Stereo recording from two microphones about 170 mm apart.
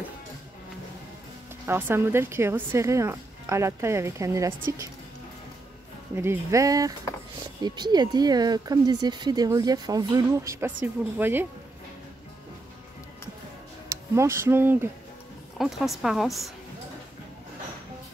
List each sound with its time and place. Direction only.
1.7 s a woman's voice: 15° right (ahead or behind)
6.1 s a woman's voice: 15° right (ahead or behind)
13.8 s speech: 15° right (ahead or behind)
15.5 s a woman's voice: centre (ahead or behind)